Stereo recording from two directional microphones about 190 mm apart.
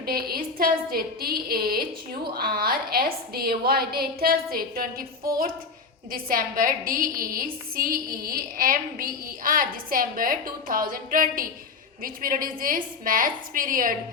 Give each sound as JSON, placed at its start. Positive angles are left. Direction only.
{"t": 0.0, "sound": "a woman's voice", "side_deg": -55}
{"t": 6.1, "sound": "a woman's voice", "side_deg": -50}